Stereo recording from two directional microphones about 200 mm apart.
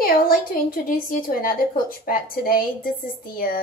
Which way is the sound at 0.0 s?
45° left (ahead or behind).